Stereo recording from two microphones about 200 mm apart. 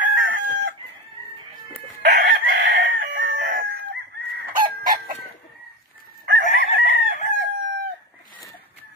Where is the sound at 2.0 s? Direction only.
45° right (ahead or behind).